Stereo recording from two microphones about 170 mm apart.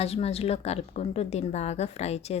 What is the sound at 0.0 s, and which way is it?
A woman's voice, 35° left (ahead or behind).